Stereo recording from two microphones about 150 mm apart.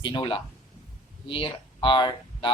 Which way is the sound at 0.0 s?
30° left (ahead or behind).